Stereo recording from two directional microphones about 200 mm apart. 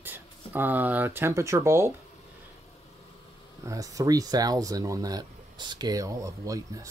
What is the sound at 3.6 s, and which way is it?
Speech, 15° right (ahead or behind).